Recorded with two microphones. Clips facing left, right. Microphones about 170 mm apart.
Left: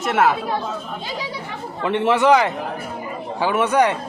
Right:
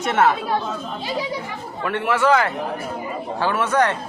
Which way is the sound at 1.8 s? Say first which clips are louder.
Left 3 dB; 20° left (ahead or behind).